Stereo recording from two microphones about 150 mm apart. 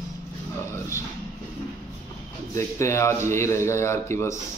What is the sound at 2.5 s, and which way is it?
Speech, 20° left (ahead or behind).